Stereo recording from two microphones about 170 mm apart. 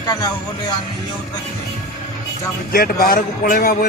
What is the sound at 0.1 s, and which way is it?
Speech, 25° left (ahead or behind).